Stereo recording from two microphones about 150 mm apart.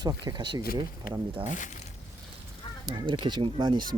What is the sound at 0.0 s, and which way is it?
Speech, 25° right (ahead or behind).